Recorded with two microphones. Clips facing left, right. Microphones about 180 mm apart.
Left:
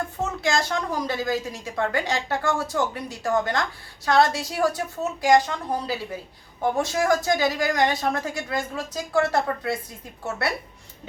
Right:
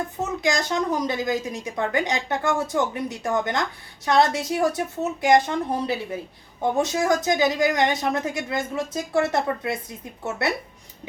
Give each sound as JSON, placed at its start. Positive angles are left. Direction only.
{"t": 0.2, "sound": "a woman's voice", "side_deg": -15}